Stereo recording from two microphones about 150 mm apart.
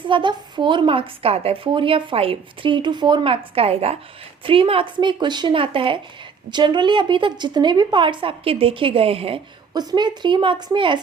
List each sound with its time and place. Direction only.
0.1 s a woman's voice: 30° right (ahead or behind)
9.7 s a woman's voice: 30° right (ahead or behind)